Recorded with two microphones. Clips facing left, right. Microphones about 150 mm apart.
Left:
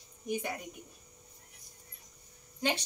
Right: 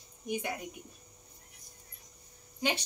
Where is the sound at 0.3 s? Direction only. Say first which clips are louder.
Even; centre (ahead or behind).